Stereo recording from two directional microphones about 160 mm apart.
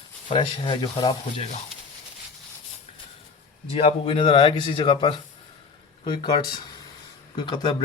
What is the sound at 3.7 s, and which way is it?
A man's voice, 35° left (ahead or behind).